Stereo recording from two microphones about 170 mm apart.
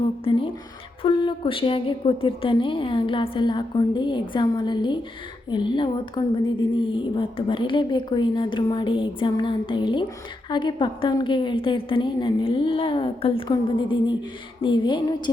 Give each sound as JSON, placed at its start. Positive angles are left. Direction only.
{"t": 0.3, "sound": "a woman's voice", "side_deg": 30}